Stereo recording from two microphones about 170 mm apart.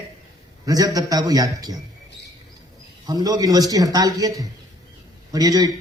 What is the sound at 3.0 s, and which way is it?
A man's voice, 20° right (ahead or behind).